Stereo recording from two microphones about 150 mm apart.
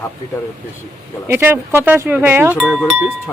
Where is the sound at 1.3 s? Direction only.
15° right (ahead or behind).